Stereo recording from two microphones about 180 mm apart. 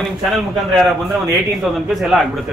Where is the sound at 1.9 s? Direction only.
Centre (ahead or behind).